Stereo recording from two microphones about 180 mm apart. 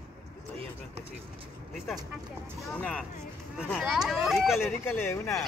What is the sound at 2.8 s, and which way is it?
Speech, 5° left (ahead or behind).